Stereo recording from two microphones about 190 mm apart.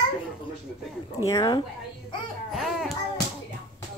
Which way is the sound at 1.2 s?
15° left (ahead or behind).